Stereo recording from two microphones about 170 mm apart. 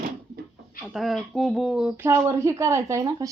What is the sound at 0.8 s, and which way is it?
Speech, centre (ahead or behind).